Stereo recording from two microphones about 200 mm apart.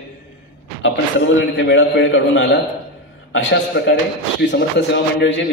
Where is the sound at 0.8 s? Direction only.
65° left (ahead or behind).